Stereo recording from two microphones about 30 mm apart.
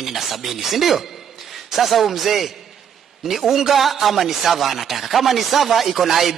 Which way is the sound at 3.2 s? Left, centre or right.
Centre.